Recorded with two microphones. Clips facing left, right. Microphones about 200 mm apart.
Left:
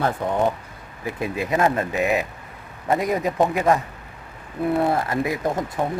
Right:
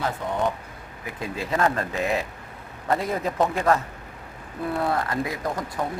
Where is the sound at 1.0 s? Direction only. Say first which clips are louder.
Left 5 dB; 20° left (ahead or behind).